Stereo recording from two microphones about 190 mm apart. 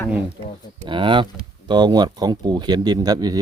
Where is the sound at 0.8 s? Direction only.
25° right (ahead or behind).